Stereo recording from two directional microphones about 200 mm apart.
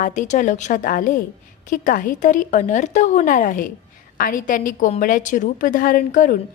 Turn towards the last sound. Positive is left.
turn(degrees=40)  # may be behind; listen again after turning